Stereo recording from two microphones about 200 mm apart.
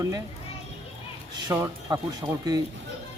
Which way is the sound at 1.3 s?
20° right (ahead or behind).